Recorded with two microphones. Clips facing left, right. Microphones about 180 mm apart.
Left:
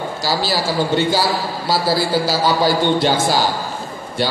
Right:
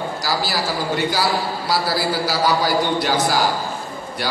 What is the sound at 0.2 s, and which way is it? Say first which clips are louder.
A man's voice: left 5 dB; 25° left (ahead or behind).